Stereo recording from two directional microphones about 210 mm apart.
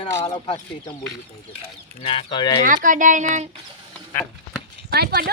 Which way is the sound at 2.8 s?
40° right (ahead or behind).